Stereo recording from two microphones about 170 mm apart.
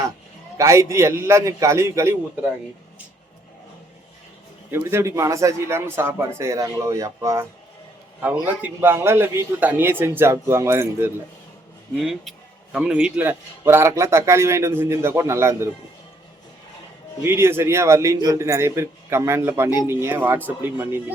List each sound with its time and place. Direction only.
0.5 s a man's voice: 20° right (ahead or behind)
4.7 s a man's voice: 15° right (ahead or behind)
11.9 s a man's voice: centre (ahead or behind); by 15.7 s 15° right (ahead or behind)
17.2 s a man's voice: 15° right (ahead or behind)